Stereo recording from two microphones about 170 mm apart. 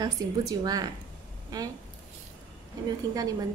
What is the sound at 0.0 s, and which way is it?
A woman's voice, 20° right (ahead or behind).